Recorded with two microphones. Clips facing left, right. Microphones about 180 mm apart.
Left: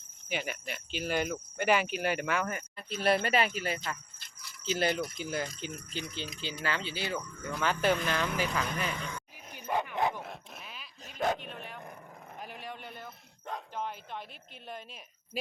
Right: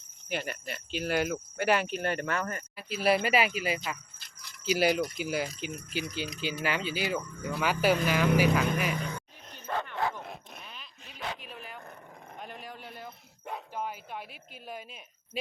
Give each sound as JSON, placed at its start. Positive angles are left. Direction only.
{"t": 0.3, "sound": "cricket", "side_deg": 5}
{"t": 2.7, "sound": "speech", "side_deg": -5}
{"t": 4.9, "sound": "cricket", "side_deg": 0}
{"t": 5.2, "sound": "speech", "side_deg": -10}
{"t": 9.5, "sound": "dog", "side_deg": 10}
{"t": 10.2, "sound": "dog", "side_deg": 0}
{"t": 11.0, "sound": "dog", "side_deg": 45}
{"t": 11.3, "sound": "dog", "side_deg": -5}
{"t": 12.4, "sound": "bow-wow", "side_deg": 0}